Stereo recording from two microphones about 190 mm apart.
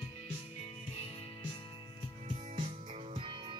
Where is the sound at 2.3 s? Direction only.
40° right (ahead or behind).